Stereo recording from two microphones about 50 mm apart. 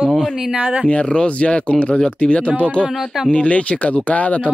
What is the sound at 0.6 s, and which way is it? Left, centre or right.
Speech, right.